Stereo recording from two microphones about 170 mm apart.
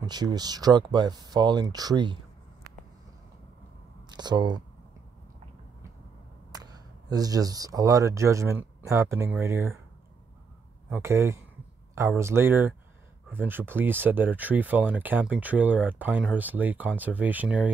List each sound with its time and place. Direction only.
0.0 s speech: 25° right (ahead or behind)
4.1 s speech: 25° right (ahead or behind)
6.5 s speech: 25° right (ahead or behind)
10.9 s speech: 15° right (ahead or behind)